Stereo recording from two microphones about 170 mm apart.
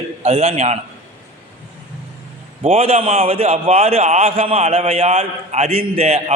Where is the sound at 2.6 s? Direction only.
35° right (ahead or behind).